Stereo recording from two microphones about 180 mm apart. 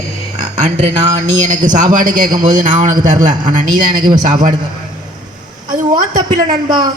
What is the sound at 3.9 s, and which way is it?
Speech, 25° right (ahead or behind).